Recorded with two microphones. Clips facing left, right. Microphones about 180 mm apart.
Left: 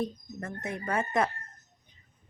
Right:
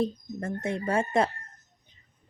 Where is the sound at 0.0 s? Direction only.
30° right (ahead or behind).